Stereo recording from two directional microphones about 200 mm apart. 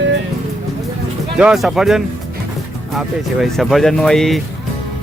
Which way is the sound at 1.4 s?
5° right (ahead or behind).